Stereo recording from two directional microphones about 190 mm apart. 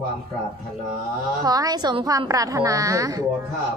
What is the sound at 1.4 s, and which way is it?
A woman's voice, 20° right (ahead or behind).